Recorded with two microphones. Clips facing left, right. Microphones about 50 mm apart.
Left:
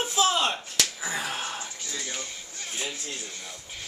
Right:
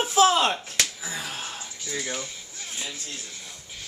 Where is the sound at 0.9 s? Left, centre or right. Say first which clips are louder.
Left 3 dB; centre.